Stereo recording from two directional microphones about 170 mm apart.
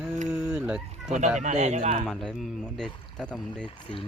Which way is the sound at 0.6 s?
5° right (ahead or behind).